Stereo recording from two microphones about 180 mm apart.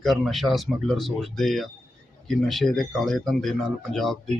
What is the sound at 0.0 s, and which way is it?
Speech, centre (ahead or behind).